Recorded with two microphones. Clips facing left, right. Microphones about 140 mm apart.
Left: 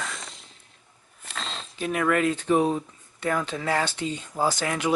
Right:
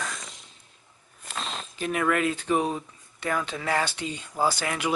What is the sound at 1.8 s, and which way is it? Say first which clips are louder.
Speech: left 2 dB; centre (ahead or behind).